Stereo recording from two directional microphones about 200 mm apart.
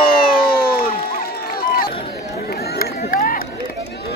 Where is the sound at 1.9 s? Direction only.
30° left (ahead or behind).